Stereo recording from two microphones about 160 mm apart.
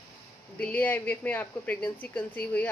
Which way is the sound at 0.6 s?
10° left (ahead or behind).